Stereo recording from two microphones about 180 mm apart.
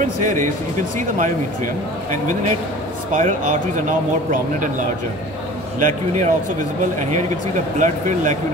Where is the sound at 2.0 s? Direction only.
45° right (ahead or behind).